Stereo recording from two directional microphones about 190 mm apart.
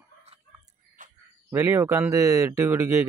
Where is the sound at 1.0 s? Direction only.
45° right (ahead or behind).